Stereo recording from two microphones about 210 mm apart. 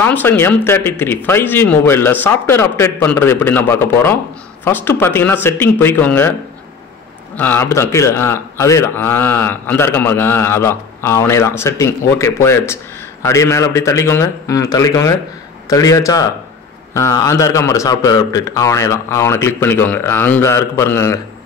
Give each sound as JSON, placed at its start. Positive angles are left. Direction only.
{"t": 0.0, "sound": "a man's voice", "side_deg": 10}
{"t": 7.3, "sound": "a man's voice", "side_deg": 10}